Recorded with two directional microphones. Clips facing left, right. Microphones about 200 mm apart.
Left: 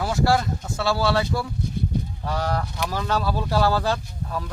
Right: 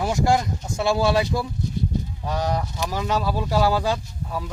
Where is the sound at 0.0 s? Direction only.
20° right (ahead or behind).